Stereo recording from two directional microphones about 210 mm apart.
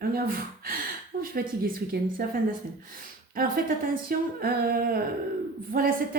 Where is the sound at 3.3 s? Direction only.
45° right (ahead or behind).